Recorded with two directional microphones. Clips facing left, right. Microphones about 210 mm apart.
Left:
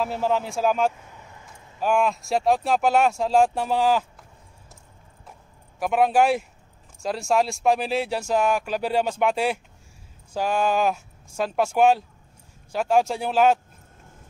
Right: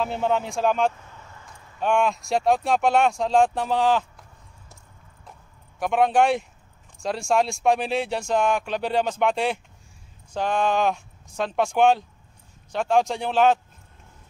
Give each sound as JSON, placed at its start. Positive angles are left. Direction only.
{"t": 0.0, "sound": "speech", "side_deg": 5}
{"t": 1.8, "sound": "speech", "side_deg": 5}
{"t": 5.8, "sound": "speech", "side_deg": 5}